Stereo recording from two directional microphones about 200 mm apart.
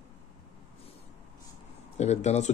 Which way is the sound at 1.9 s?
35° left (ahead or behind).